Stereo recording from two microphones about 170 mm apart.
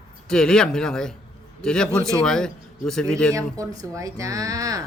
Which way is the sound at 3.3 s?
20° right (ahead or behind).